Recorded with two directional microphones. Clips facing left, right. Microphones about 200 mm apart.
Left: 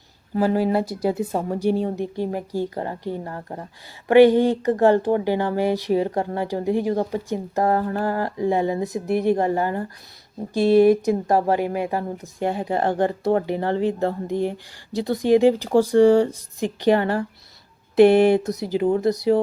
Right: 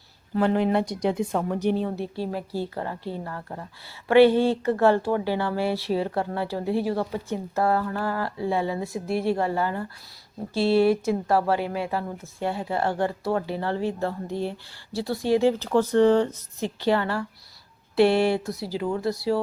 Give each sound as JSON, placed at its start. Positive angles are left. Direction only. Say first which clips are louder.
{"t": 0.3, "sound": "speech", "louder": "left 2 dB", "side_deg": 5}
{"t": 3.3, "sound": "speech", "louder": "left 3 dB", "side_deg": 30}
{"t": 4.1, "sound": "speech", "louder": "left 3 dB", "side_deg": 15}
{"t": 7.6, "sound": "a sound", "louder": "left 3 dB", "side_deg": 40}
{"t": 8.2, "sound": "speech", "louder": "left 5 dB", "side_deg": 15}